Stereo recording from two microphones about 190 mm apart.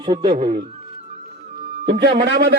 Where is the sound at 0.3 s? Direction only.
35° right (ahead or behind).